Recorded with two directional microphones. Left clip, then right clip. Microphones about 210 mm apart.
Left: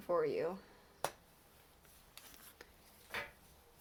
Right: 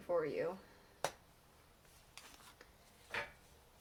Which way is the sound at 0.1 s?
30° left (ahead or behind).